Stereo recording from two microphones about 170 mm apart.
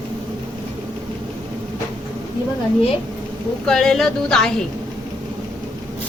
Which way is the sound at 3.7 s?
Centre (ahead or behind).